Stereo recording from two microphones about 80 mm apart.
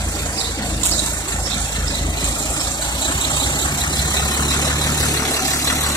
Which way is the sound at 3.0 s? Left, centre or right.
Left.